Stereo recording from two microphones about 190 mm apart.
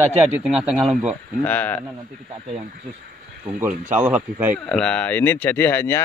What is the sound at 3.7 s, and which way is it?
Speech, 45° right (ahead or behind).